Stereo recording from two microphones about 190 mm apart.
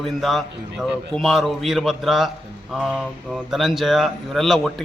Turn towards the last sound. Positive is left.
turn(degrees=0)  # may be behind; listen again after turning